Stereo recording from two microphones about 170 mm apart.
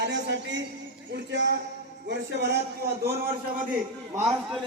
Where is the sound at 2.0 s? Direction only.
85° right.